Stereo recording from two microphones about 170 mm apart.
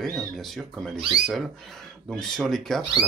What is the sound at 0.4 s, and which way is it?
Speech, centre (ahead or behind).